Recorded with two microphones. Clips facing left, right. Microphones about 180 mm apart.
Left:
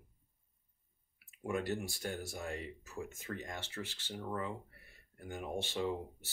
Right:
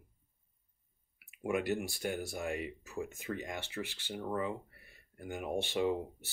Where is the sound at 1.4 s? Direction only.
15° right (ahead or behind).